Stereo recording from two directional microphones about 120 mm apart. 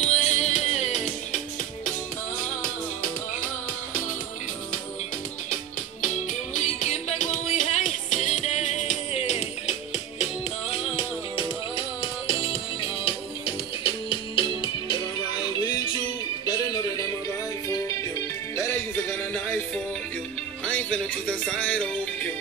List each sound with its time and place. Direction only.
0.0 s music: 70° left (ahead or behind)
6.5 s music: 75° left (ahead or behind)
10.7 s music: 55° left (ahead or behind)
16.4 s music: 30° left (ahead or behind)
18.6 s music: 15° left (ahead or behind)